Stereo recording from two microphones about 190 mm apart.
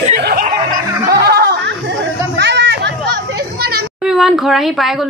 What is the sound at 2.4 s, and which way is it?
Children playing, 65° right (ahead or behind).